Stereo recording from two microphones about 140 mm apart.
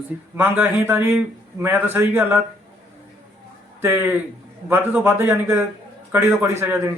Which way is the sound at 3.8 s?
15° right (ahead or behind).